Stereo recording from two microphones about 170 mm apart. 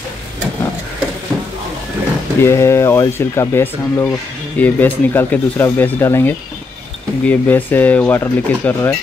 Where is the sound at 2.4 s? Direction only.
15° left (ahead or behind).